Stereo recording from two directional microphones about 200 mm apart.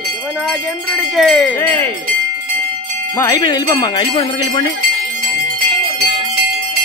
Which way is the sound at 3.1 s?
15° left (ahead or behind).